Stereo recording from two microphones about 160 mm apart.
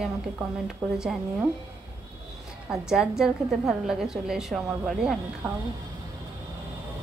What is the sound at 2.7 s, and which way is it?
A woman's voice, 5° right (ahead or behind).